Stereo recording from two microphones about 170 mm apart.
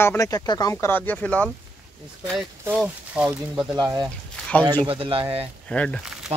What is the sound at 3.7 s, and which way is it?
Speech, 20° right (ahead or behind).